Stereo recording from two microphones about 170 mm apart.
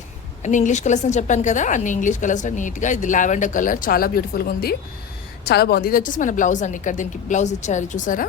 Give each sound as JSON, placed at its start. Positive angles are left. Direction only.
{"t": 0.4, "sound": "a woman's voice", "side_deg": 45}